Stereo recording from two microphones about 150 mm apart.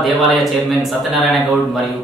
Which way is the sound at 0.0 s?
Centre (ahead or behind).